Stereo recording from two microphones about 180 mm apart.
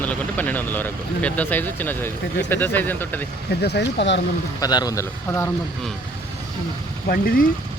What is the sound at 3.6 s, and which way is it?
Speech, 70° left (ahead or behind).